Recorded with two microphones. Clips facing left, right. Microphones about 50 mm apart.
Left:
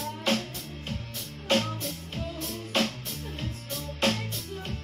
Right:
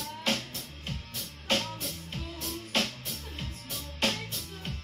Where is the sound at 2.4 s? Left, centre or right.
Centre.